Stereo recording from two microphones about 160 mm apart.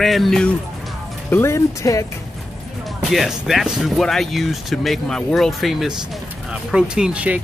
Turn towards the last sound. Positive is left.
turn(degrees=-10)  # may be behind; listen again after turning